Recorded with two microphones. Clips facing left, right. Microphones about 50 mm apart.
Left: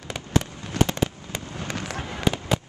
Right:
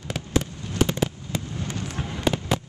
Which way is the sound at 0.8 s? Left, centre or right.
Left.